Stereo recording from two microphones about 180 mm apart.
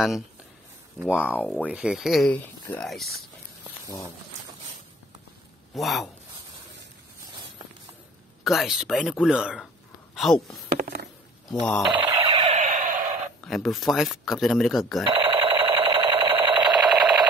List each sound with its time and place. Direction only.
1.0 s speech: 10° left (ahead or behind)
1.7 s speech: 5° right (ahead or behind)
2.3 s speech: 10° left (ahead or behind)
3.8 s speech: 20° left (ahead or behind)
5.8 s speech: centre (ahead or behind)
8.5 s speech: centre (ahead or behind)
11.4 s speech: 5° left (ahead or behind)
12.1 s a sound: 20° right (ahead or behind)
12.4 s a sound: 45° right (ahead or behind)
13.5 s speech: centre (ahead or behind)
15.0 s a sound: 30° right (ahead or behind)
16.8 s alarm clock: centre (ahead or behind)